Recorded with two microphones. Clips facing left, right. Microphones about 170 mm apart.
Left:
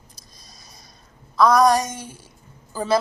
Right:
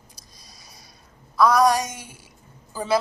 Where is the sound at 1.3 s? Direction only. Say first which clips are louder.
Left 2 dB; 10° right (ahead or behind).